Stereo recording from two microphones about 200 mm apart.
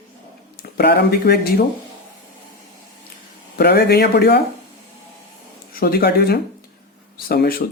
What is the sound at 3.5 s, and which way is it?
Speech, 55° left (ahead or behind).